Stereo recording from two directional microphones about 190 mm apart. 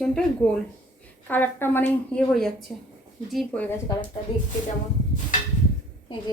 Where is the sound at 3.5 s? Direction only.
10° left (ahead or behind).